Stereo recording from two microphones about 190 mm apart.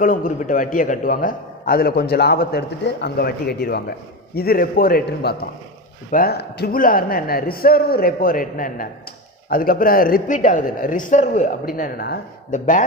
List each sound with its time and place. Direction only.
0.0 s a man's voice: 45° left (ahead or behind)